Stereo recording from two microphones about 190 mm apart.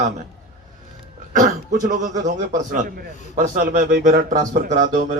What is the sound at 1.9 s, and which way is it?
Speech, 40° right (ahead or behind).